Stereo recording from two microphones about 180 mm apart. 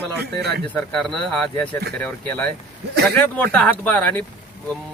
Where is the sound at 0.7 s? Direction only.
5° left (ahead or behind).